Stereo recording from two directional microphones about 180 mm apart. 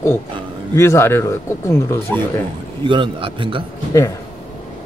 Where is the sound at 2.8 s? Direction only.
25° right (ahead or behind).